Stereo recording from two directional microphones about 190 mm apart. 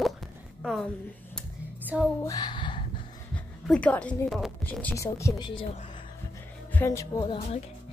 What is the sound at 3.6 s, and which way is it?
A woman's voice, 5° left (ahead or behind).